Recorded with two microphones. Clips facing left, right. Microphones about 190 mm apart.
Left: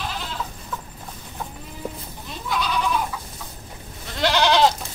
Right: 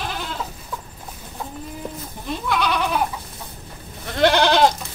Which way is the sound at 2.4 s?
65° right (ahead or behind).